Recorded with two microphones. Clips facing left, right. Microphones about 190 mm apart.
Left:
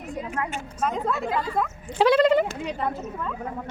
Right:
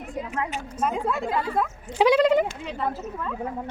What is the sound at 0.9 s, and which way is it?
Speech, 10° right (ahead or behind).